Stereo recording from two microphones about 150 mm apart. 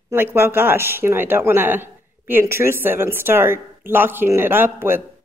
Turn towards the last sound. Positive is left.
turn(degrees=-15)  # may be behind; listen again after turning